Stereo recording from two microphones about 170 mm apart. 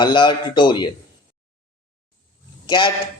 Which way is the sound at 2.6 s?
25° left (ahead or behind).